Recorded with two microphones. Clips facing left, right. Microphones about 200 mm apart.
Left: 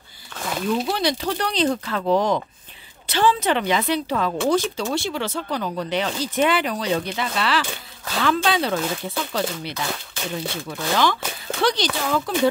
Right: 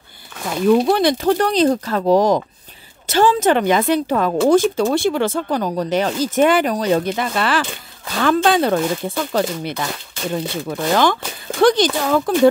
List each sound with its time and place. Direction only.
0.7 s speech: 60° right (ahead or behind)